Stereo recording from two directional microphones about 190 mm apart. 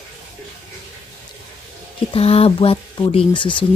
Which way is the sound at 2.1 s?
30° left (ahead or behind).